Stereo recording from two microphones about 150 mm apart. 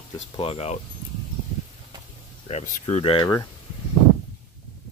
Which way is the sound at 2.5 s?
50° left (ahead or behind).